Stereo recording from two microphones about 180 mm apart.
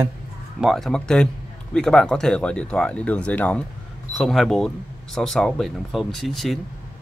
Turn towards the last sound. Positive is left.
turn(degrees=0)  # may be behind; listen again after turning